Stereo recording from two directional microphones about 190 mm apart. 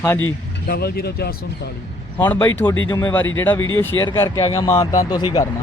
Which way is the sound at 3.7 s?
20° left (ahead or behind).